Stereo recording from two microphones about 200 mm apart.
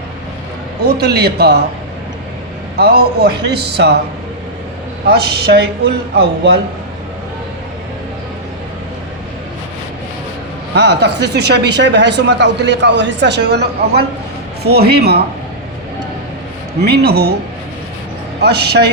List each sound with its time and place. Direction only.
0.8 s speech: 55° right (ahead or behind)
2.7 s speech: 55° right (ahead or behind)
5.0 s speech: 55° right (ahead or behind)
10.8 s speech: 60° right (ahead or behind)
16.8 s speech: 55° right (ahead or behind)
18.4 s speech: 55° right (ahead or behind)